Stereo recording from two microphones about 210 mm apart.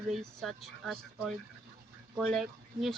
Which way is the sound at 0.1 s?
Centre (ahead or behind).